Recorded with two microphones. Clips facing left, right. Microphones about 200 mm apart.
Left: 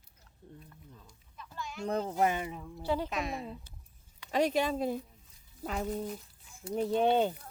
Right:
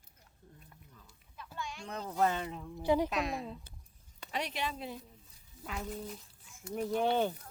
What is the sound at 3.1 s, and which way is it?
Speech, centre (ahead or behind).